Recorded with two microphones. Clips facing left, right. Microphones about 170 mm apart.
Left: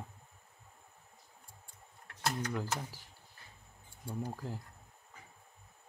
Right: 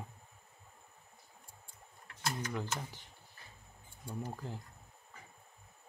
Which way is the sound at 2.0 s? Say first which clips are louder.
Left 3 dB; 65° left (ahead or behind).